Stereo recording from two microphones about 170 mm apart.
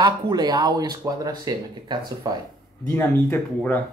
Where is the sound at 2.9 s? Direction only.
10° left (ahead or behind).